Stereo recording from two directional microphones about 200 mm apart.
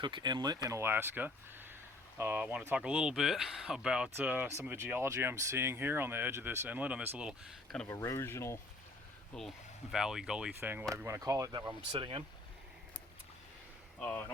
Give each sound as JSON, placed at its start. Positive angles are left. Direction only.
{"t": 0.0, "sound": "speech", "side_deg": -20}
{"t": 7.9, "sound": "speech", "side_deg": 15}
{"t": 14.0, "sound": "speech", "side_deg": 10}